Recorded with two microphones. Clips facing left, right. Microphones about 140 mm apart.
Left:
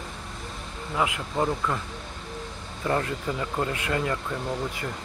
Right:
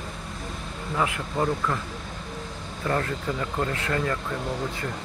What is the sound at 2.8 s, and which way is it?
Speech, 20° left (ahead or behind).